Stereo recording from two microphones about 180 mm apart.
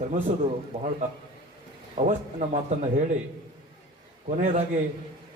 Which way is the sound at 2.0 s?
40° right (ahead or behind).